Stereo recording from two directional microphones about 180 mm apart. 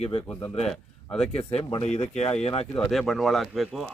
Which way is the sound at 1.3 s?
30° left (ahead or behind).